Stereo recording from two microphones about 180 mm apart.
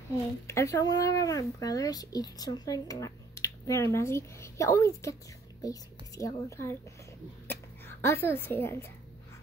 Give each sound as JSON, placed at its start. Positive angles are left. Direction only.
{"t": 0.5, "sound": "a woman's voice", "side_deg": 15}